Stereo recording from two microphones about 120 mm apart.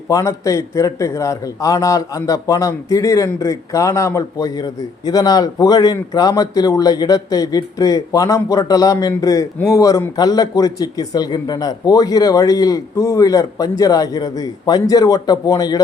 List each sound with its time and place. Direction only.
0.1 s a man's voice: 25° left (ahead or behind)